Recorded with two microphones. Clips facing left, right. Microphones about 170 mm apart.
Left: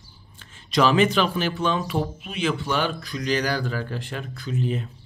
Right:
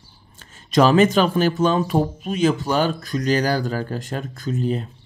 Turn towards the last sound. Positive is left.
turn(degrees=-40)  # may be behind; listen again after turning